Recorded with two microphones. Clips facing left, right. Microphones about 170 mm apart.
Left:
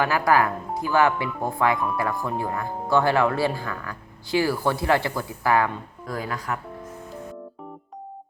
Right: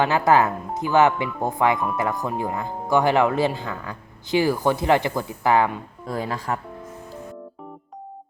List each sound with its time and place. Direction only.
0.0 s speech: 25° right (ahead or behind)